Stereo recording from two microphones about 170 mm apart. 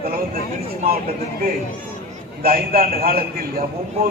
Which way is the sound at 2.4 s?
60° right (ahead or behind).